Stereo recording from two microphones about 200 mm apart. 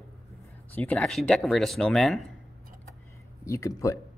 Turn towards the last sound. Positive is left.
turn(degrees=15)  # may be behind; listen again after turning